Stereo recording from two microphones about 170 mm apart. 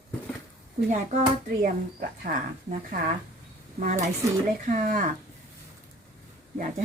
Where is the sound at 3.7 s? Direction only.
50° right (ahead or behind).